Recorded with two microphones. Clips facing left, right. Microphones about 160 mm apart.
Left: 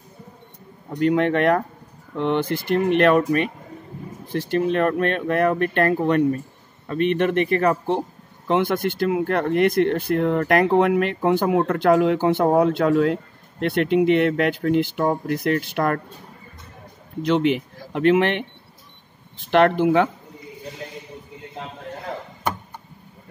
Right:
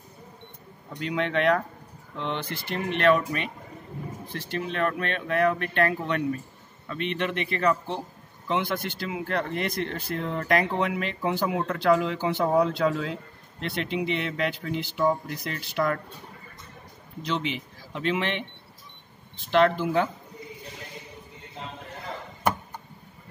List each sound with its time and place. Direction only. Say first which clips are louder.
0.9 s speech: left 8 dB; 50° left (ahead or behind)
17.2 s speech: left 10 dB; 55° left (ahead or behind)